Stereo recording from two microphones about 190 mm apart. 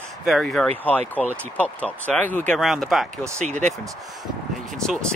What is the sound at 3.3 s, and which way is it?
Speech, 40° right (ahead or behind).